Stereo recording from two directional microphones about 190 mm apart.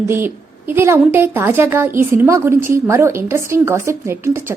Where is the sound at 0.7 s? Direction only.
10° right (ahead or behind).